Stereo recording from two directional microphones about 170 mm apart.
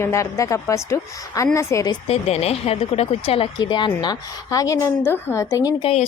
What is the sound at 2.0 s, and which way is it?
Speech, 35° left (ahead or behind).